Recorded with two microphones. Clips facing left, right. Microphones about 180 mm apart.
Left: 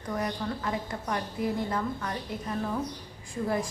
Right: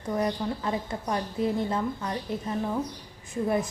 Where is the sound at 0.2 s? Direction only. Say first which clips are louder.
Right 4 dB; 25° right (ahead or behind).